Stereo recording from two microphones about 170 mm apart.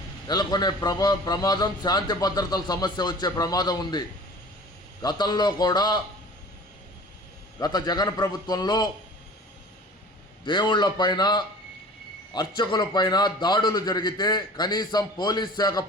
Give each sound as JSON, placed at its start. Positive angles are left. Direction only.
{"t": 0.3, "sound": "a man's voice", "side_deg": 25}
{"t": 5.0, "sound": "a man's voice", "side_deg": 25}
{"t": 7.6, "sound": "a man's voice", "side_deg": 25}
{"t": 10.4, "sound": "a man's voice", "side_deg": 25}